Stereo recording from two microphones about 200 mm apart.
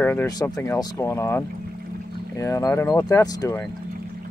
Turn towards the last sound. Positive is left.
turn(degrees=20)  # may be behind; listen again after turning